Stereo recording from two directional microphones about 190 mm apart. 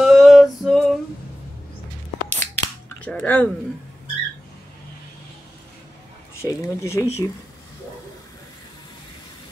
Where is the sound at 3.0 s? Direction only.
5° left (ahead or behind).